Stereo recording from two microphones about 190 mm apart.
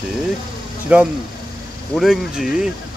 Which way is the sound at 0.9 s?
10° right (ahead or behind).